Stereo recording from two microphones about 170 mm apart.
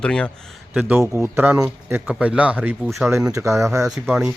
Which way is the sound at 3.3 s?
20° right (ahead or behind).